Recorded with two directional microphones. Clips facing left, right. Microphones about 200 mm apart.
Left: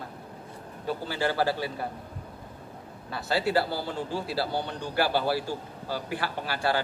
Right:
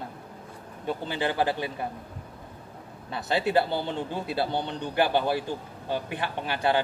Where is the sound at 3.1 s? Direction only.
20° right (ahead or behind).